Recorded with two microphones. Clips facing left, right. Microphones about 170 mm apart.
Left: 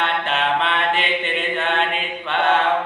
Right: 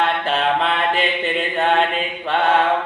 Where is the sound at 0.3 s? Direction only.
40° right (ahead or behind).